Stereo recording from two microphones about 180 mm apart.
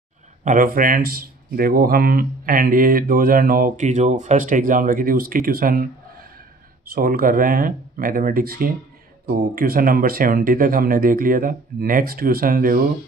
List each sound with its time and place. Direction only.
0.4 s speech: 45° right (ahead or behind)